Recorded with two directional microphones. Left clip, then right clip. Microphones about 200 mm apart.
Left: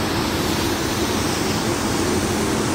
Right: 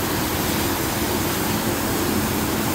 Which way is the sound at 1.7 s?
60° right (ahead or behind).